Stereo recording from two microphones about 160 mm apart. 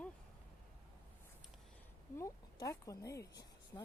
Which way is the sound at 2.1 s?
20° left (ahead or behind).